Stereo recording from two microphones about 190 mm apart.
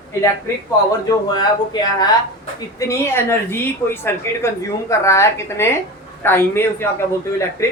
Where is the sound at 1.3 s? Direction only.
20° left (ahead or behind).